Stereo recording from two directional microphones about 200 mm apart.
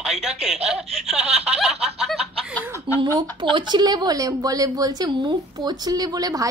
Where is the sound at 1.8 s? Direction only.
Centre (ahead or behind).